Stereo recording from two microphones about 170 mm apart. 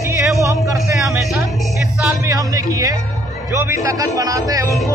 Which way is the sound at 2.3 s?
20° right (ahead or behind).